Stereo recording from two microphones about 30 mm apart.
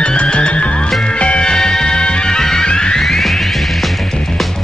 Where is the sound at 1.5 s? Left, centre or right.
Centre.